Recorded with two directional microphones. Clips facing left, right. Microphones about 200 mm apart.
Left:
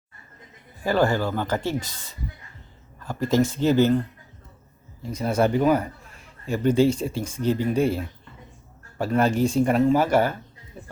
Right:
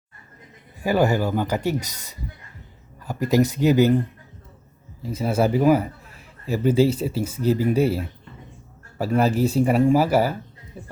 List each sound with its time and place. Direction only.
0.8 s speech: 10° right (ahead or behind)
1.6 s speech: 40° right (ahead or behind)
3.5 s speech: 10° right (ahead or behind)
5.0 s speech: 5° right (ahead or behind)